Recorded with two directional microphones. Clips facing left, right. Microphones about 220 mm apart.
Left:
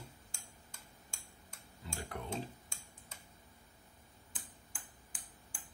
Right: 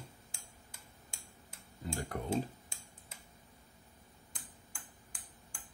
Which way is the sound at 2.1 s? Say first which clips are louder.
Right 2 dB; 45° right (ahead or behind).